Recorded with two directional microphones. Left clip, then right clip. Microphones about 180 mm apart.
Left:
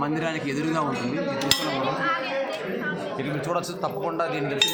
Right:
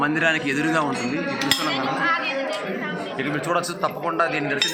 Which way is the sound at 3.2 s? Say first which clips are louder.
Right 6 dB; 5° left (ahead or behind).